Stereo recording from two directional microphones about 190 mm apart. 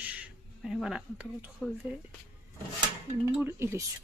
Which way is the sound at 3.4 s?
15° right (ahead or behind).